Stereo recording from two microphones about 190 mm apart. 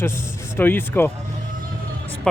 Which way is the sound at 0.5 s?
10° left (ahead or behind).